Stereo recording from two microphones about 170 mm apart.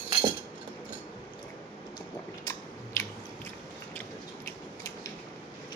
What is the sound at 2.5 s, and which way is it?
Biting, 15° left (ahead or behind).